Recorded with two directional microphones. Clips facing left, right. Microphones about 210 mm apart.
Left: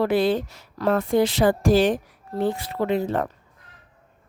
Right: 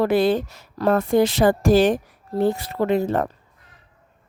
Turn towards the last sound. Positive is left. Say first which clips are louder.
# right 3 dB
turn(degrees=-45)  # may be behind; listen again after turning